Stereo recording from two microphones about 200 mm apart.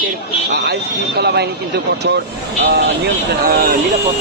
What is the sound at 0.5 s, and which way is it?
Speech, 55° right (ahead or behind).